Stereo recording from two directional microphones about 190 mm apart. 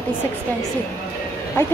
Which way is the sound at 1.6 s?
10° left (ahead or behind).